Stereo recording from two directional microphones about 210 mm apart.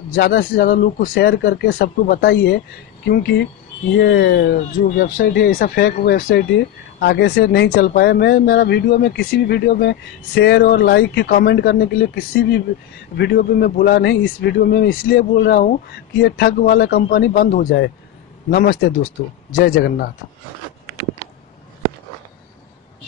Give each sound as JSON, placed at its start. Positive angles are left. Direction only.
{"t": 0.1, "sound": "speech", "side_deg": 45}
{"t": 4.9, "sound": "speech", "side_deg": 45}
{"t": 17.6, "sound": "a man's voice", "side_deg": 55}